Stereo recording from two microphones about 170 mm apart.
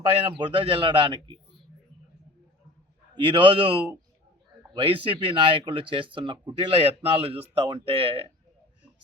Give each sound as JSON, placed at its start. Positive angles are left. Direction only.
{"t": 0.3, "sound": "speech", "side_deg": -30}
{"t": 3.2, "sound": "speech", "side_deg": -30}